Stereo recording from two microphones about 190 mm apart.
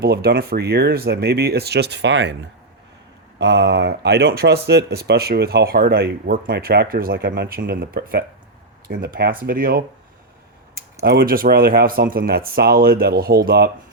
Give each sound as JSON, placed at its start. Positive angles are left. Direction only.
{"t": 0.0, "sound": "speech", "side_deg": -55}
{"t": 11.0, "sound": "speech", "side_deg": -55}